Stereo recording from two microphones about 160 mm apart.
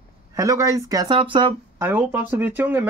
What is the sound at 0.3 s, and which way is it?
Speech, 20° right (ahead or behind).